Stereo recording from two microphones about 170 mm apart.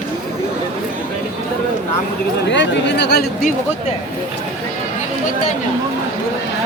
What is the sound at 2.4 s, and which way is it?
Speech, 90° left.